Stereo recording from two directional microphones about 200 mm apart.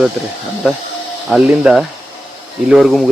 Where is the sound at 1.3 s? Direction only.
Centre (ahead or behind).